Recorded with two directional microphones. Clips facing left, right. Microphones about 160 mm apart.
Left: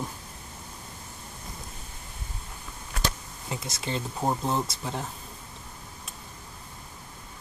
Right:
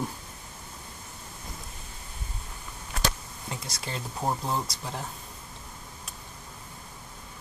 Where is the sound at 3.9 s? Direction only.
Centre (ahead or behind).